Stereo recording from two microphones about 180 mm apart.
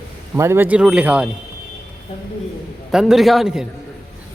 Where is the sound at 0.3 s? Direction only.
15° right (ahead or behind).